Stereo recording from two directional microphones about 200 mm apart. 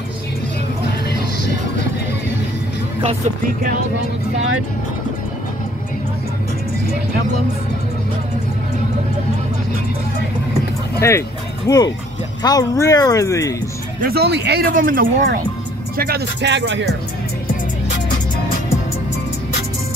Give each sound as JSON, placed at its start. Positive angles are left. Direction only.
{"t": 11.0, "sound": "speech", "side_deg": 15}
{"t": 14.0, "sound": "speech", "side_deg": -55}